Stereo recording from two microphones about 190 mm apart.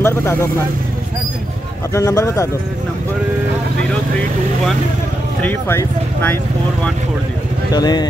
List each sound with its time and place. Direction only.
0.0 s speech: 15° left (ahead or behind)
2.0 s speech: 15° left (ahead or behind)
5.4 s speech: 10° left (ahead or behind)
7.7 s speech: 20° left (ahead or behind)